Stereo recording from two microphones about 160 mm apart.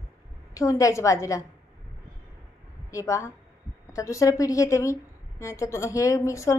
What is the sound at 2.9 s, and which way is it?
A woman's voice, 20° left (ahead or behind).